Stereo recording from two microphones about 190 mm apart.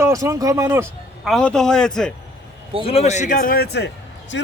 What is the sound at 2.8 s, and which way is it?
A man's voice, 30° left (ahead or behind).